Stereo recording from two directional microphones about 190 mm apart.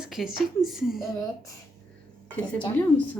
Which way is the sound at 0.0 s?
Centre (ahead or behind).